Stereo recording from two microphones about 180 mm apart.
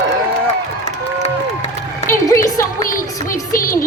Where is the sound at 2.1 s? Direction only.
15° left (ahead or behind).